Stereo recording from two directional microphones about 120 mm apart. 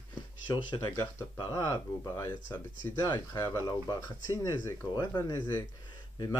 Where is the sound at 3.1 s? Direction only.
30° left (ahead or behind).